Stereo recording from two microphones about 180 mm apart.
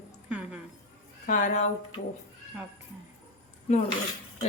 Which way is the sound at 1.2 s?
45° left (ahead or behind).